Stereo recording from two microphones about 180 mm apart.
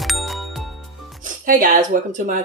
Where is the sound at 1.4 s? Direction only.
50° right (ahead or behind).